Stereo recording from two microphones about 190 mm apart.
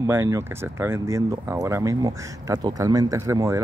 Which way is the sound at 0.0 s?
15° right (ahead or behind).